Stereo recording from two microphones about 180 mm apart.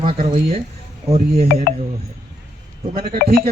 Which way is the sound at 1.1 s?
35° right (ahead or behind).